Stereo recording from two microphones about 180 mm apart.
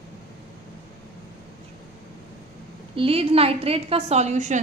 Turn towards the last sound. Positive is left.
turn(degrees=-40)  # may be behind; listen again after turning